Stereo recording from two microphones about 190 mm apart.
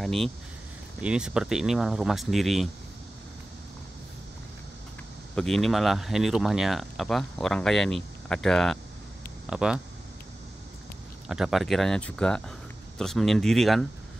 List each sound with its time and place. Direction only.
0.0 s speech: centre (ahead or behind)
5.3 s speech: centre (ahead or behind)
11.2 s speech: centre (ahead or behind)